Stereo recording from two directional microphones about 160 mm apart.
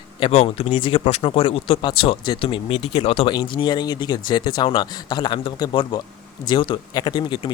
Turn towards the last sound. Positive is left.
turn(degrees=30)  # may be behind; listen again after turning